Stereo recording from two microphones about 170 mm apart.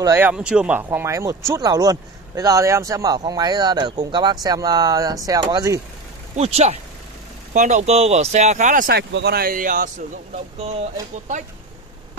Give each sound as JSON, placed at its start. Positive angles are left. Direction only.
{"t": 0.0, "sound": "speech", "side_deg": -15}
{"t": 6.3, "sound": "speech", "side_deg": -40}
{"t": 8.9, "sound": "speech", "side_deg": -75}